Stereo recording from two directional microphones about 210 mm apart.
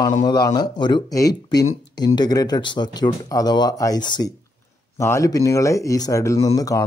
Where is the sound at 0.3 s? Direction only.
20° left (ahead or behind).